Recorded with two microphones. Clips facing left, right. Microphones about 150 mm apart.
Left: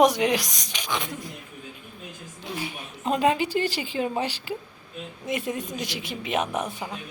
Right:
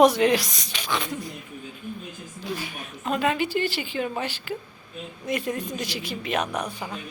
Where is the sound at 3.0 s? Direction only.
30° left (ahead or behind).